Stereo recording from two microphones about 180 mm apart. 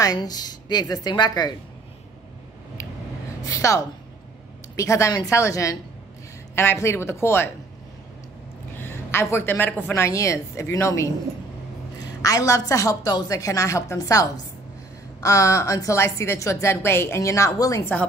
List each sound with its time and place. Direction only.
0.0 s a woman's voice: 20° left (ahead or behind)
3.4 s a woman's voice: 20° left (ahead or behind)
8.7 s a woman's voice: 10° left (ahead or behind)